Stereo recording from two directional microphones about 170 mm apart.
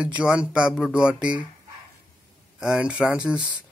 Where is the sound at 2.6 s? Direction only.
5° right (ahead or behind).